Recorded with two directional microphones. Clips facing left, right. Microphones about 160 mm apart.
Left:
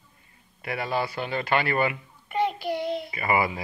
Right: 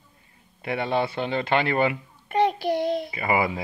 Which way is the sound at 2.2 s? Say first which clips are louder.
Right 4 dB; 40° right (ahead or behind).